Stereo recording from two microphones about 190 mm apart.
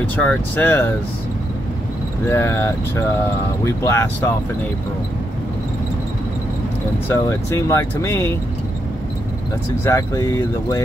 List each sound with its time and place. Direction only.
0.1 s speech: 10° left (ahead or behind)
2.2 s speech: 10° left (ahead or behind)
7.1 s speech: 15° left (ahead or behind)
9.8 s speech: 15° left (ahead or behind)